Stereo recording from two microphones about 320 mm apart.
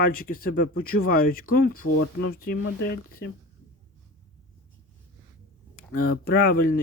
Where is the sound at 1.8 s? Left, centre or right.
Left.